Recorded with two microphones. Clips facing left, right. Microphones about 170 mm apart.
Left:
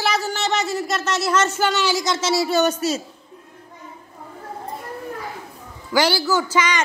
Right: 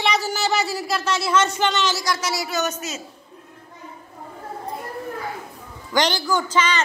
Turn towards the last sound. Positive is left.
turn(degrees=10)  # may be behind; listen again after turning